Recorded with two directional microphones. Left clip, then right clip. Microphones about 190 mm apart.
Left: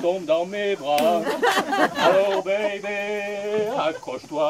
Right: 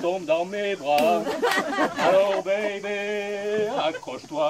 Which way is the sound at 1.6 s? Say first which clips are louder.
Left 3 dB; 25° left (ahead or behind).